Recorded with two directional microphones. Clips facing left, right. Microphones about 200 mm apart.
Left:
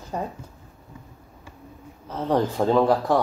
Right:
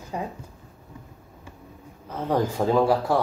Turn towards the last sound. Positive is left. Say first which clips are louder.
# left 1 dB
turn(degrees=-10)  # may be behind; listen again after turning